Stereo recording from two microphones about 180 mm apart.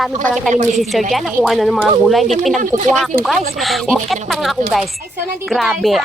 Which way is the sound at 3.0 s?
Centre (ahead or behind).